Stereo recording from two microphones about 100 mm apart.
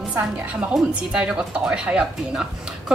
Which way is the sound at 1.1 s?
10° right (ahead or behind).